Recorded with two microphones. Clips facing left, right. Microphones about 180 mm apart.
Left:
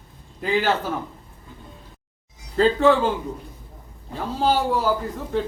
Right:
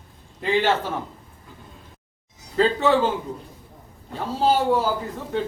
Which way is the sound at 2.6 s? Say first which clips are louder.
Left 2 dB; centre (ahead or behind).